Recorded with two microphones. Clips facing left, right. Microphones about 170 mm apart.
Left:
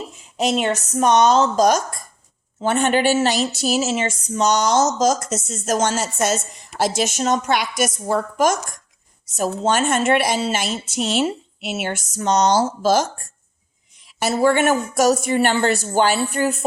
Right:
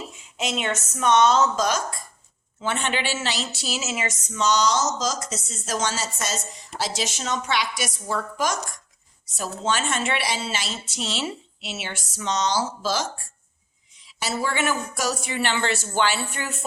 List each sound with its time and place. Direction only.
0.3 s a woman's voice: 40° left (ahead or behind)
4.4 s a woman's voice: 50° left (ahead or behind)